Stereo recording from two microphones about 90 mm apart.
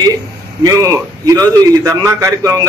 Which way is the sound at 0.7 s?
40° right (ahead or behind).